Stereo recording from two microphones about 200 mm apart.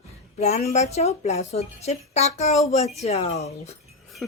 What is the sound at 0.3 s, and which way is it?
Speech, 30° left (ahead or behind).